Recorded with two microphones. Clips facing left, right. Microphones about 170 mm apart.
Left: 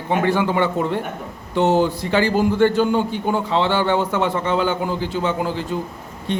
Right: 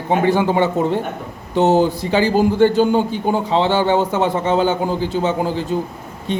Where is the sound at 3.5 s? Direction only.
15° right (ahead or behind).